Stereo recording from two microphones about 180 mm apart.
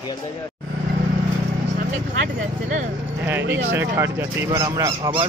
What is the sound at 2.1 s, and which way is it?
Speech, 45° right (ahead or behind).